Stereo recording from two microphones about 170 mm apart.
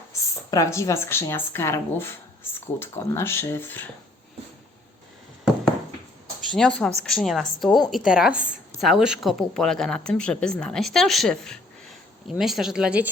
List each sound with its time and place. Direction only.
0.1 s a woman's voice: 20° left (ahead or behind)
6.5 s a woman's voice: 5° left (ahead or behind)